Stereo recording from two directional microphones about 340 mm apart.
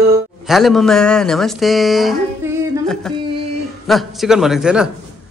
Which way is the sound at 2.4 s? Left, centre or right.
Centre.